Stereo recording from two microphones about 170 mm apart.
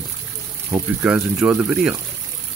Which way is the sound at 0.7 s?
10° right (ahead or behind).